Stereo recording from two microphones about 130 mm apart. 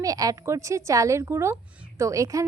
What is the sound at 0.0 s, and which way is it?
A woman's voice, 25° right (ahead or behind).